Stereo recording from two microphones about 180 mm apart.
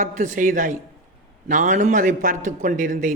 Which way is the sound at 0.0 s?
40° right (ahead or behind).